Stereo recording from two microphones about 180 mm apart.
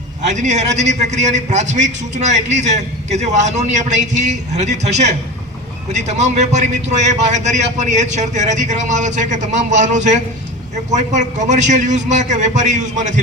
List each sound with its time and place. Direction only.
0.2 s a man's voice: 40° right (ahead or behind)